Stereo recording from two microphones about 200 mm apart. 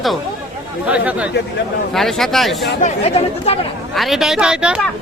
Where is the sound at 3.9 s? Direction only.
Centre (ahead or behind).